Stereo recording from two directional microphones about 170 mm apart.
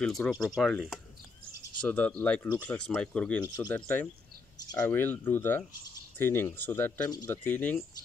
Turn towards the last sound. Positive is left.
turn(degrees=10)  # may be behind; listen again after turning